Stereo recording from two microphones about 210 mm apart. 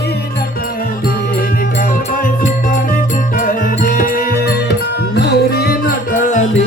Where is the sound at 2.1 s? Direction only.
40° left (ahead or behind).